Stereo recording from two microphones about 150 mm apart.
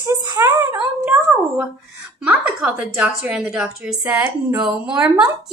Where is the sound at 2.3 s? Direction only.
10° right (ahead or behind).